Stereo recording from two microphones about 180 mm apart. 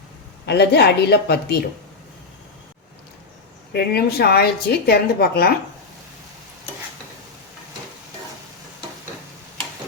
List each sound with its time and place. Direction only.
0.4 s a woman's voice: 65° left (ahead or behind)
3.7 s a woman's voice: 60° left (ahead or behind)